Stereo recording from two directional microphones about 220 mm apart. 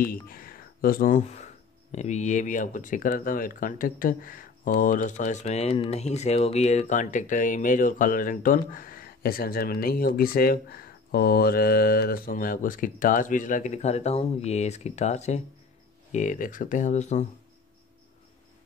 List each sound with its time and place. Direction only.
0.0 s speech: 40° left (ahead or behind)